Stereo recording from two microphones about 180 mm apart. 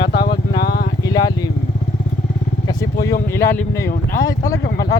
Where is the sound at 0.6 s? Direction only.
60° left (ahead or behind).